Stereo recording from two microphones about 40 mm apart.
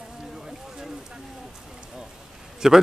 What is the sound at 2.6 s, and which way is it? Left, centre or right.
Speech, centre.